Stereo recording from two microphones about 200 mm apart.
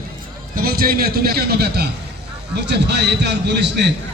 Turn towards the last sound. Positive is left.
turn(degrees=-60)  # may be behind; listen again after turning